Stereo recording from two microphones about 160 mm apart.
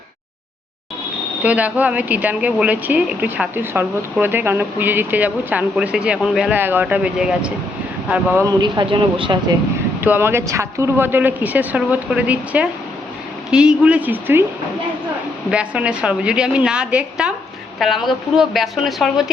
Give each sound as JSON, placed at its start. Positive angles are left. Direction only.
{"t": 1.4, "sound": "speech", "side_deg": -10}
{"t": 8.6, "sound": "speech", "side_deg": -25}
{"t": 10.0, "sound": "speech", "side_deg": -15}
{"t": 15.4, "sound": "a woman's voice", "side_deg": -5}